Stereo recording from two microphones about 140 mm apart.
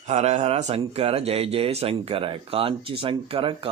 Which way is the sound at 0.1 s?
50° right (ahead or behind).